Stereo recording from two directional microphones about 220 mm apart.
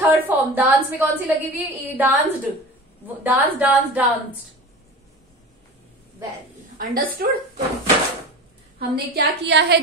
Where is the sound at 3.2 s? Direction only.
5° right (ahead or behind).